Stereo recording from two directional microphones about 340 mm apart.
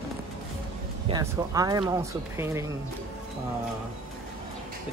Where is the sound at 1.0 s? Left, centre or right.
Centre.